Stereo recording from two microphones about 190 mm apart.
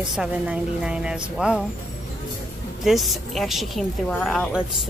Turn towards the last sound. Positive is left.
turn(degrees=0)  # may be behind; listen again after turning